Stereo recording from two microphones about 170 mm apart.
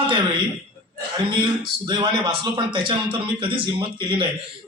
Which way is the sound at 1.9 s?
25° right (ahead or behind).